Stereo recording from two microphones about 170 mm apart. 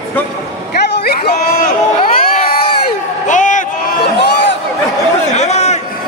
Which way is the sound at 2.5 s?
60° left (ahead or behind).